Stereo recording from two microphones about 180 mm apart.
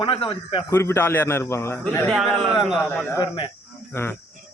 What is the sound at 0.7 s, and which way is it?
A man's voice, 15° left (ahead or behind).